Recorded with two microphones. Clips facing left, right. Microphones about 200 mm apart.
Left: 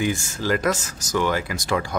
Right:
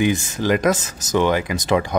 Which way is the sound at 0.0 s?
20° right (ahead or behind).